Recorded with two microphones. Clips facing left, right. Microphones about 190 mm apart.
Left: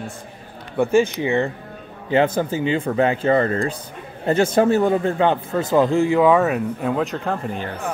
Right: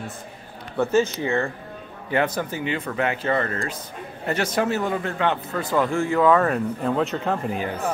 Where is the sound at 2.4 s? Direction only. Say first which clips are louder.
Left 6 dB; 25° left (ahead or behind).